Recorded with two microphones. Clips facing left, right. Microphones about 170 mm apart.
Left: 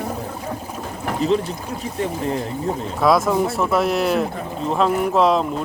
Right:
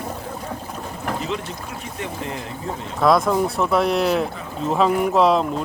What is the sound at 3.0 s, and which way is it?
Speech, centre (ahead or behind).